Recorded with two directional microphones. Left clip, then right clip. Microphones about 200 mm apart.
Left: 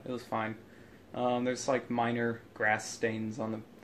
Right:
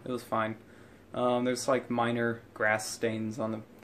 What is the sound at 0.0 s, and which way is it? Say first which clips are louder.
Speech: right 3 dB; 15° right (ahead or behind).